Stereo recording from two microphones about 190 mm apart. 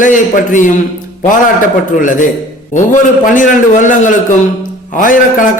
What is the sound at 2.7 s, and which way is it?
A man's voice, 40° left (ahead or behind).